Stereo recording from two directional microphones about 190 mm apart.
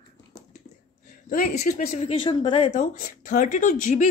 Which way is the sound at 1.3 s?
45° left (ahead or behind).